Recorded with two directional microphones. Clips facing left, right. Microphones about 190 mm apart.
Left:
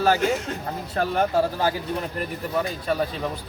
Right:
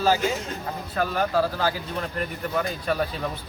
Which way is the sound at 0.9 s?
25° left (ahead or behind).